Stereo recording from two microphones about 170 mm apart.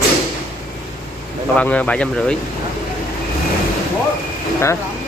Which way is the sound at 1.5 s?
10° left (ahead or behind).